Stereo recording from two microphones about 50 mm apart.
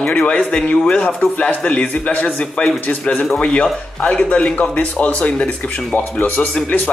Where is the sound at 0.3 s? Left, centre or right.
Left.